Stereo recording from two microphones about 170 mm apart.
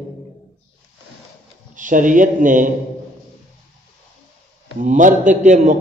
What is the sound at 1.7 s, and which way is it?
Speech, 50° right (ahead or behind).